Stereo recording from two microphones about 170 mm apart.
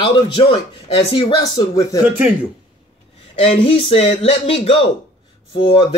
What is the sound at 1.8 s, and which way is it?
Speech, 20° left (ahead or behind).